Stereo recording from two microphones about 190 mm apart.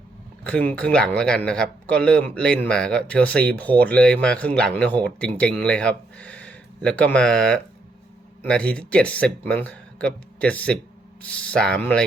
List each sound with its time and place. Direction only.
0.4 s a man's voice: 5° left (ahead or behind)